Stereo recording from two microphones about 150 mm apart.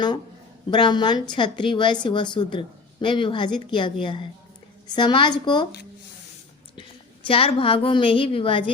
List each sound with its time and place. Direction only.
0.7 s a woman's voice: 30° left (ahead or behind)
7.3 s a woman's voice: 40° left (ahead or behind)